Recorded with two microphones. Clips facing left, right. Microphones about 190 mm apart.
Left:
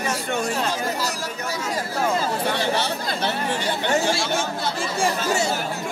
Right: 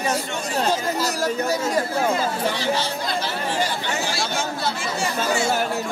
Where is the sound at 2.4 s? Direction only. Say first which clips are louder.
Even; 60° left (ahead or behind).